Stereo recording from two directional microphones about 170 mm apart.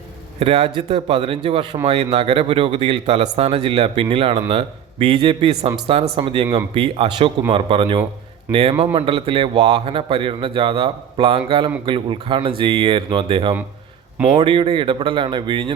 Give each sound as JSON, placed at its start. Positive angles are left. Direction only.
{"t": 0.3, "sound": "speech", "side_deg": -35}
{"t": 8.5, "sound": "a man's voice", "side_deg": -10}
{"t": 8.8, "sound": "speech", "side_deg": -35}